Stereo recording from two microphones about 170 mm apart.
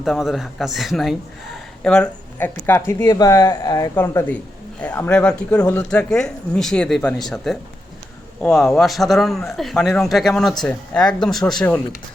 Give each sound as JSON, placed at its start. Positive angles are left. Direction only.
{"t": 0.0, "sound": "a man's voice", "side_deg": 0}